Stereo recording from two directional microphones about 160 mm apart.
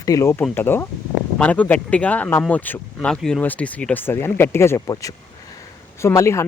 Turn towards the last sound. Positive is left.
turn(degrees=20)  # may be behind; listen again after turning